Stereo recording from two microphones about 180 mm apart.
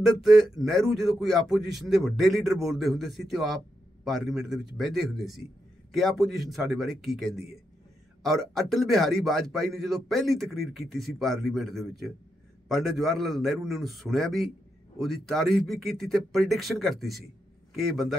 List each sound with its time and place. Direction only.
0.2 s a man's voice: centre (ahead or behind)